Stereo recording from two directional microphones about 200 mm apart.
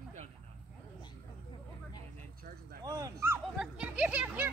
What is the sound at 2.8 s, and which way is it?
Dog, 15° right (ahead or behind).